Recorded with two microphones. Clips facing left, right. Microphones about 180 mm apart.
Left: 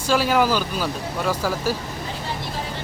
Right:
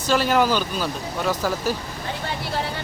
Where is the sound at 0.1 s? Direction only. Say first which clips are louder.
Even; 5° left (ahead or behind).